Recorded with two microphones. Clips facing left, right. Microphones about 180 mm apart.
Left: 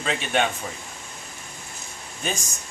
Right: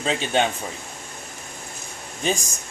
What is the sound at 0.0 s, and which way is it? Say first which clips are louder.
Speech: right 2 dB; 30° right (ahead or behind).